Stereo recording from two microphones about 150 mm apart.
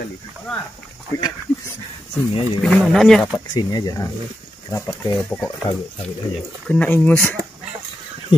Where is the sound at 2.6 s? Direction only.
5° left (ahead or behind).